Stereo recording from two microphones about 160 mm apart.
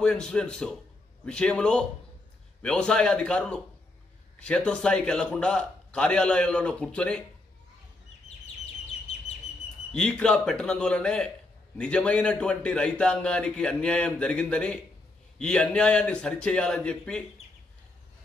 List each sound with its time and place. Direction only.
0.0 s a man's voice: 5° left (ahead or behind)
9.1 s bird: 40° left (ahead or behind)
9.9 s a man's voice: 5° left (ahead or behind)